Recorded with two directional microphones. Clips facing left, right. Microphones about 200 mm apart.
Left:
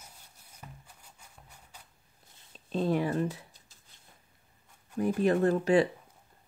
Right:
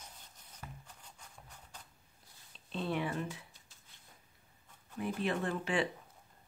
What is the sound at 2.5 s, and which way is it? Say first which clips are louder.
Shuffling cards: left 8 dB; 40° left (ahead or behind).